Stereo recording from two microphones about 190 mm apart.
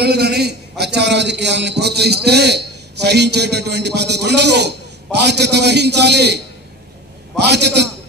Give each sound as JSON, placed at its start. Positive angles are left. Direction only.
{"t": 0.0, "sound": "a man's voice", "side_deg": -60}